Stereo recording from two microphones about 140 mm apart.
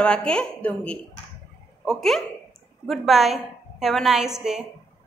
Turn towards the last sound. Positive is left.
turn(degrees=-5)  # may be behind; listen again after turning